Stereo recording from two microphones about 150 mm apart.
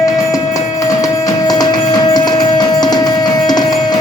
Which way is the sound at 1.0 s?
25° left (ahead or behind).